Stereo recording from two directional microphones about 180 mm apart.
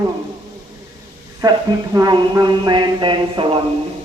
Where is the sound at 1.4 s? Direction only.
20° right (ahead or behind).